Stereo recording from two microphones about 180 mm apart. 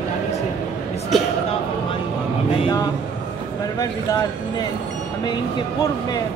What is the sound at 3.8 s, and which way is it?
Speech, 20° left (ahead or behind).